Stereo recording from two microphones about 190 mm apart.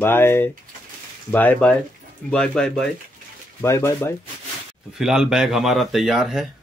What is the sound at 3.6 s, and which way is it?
Speech, 15° left (ahead or behind).